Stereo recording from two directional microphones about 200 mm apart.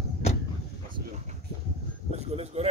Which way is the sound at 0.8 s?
35° right (ahead or behind).